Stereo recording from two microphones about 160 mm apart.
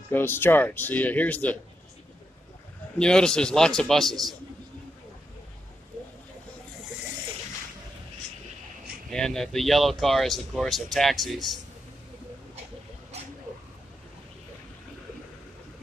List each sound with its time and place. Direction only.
0.1 s speech: 15° left (ahead or behind)
3.0 s speech: 5° left (ahead or behind)
9.1 s speech: 5° left (ahead or behind)